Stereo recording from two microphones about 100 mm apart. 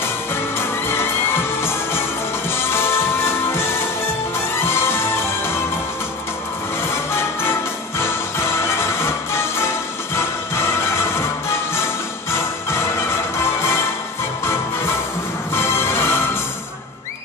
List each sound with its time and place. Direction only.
0.6 s music: 25° left (ahead or behind)
7.1 s music: 25° left (ahead or behind)
12.3 s music: 25° left (ahead or behind)
15.5 s music: 25° left (ahead or behind)